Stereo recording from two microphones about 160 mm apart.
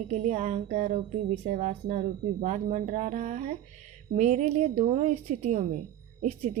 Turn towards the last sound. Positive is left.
turn(degrees=-50)  # may be behind; listen again after turning